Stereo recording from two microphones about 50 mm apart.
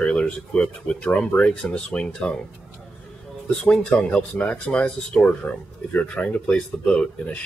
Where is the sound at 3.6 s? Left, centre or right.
Left.